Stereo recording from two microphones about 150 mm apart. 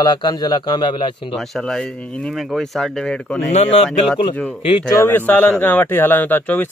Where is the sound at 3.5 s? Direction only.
45° left (ahead or behind).